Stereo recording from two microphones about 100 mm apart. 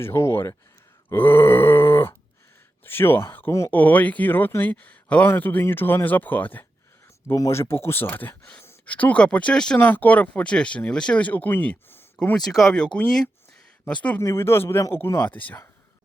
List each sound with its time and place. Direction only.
0.0 s speech: 25° left (ahead or behind)
7.3 s speech: 30° left (ahead or behind); by 12.4 s 15° left (ahead or behind)
12.4 s speech: centre (ahead or behind)
14.2 s speech: 25° left (ahead or behind)